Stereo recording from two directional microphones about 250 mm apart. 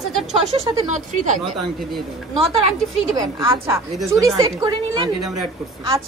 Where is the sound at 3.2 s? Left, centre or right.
Centre.